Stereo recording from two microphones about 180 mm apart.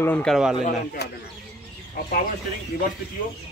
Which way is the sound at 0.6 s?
55° left (ahead or behind).